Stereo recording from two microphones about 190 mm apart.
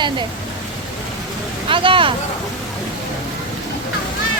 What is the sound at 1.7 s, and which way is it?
Speech, 25° right (ahead or behind).